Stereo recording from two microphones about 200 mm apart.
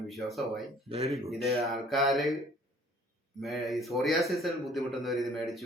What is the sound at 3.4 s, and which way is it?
Speech, centre (ahead or behind).